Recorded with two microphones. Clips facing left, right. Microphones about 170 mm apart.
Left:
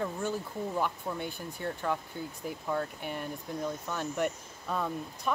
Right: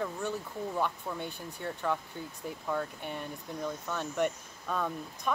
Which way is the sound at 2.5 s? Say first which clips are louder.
Left 1 dB; 5° left (ahead or behind).